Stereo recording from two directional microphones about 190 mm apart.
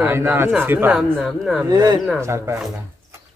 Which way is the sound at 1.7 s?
20° right (ahead or behind).